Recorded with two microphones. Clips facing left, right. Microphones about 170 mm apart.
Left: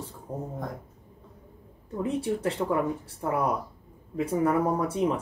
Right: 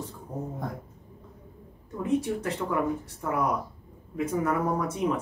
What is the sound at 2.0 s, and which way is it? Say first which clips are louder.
Speech: right 1 dB; 30° left (ahead or behind).